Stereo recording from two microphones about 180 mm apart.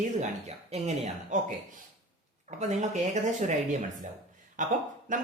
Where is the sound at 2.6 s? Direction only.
40° right (ahead or behind).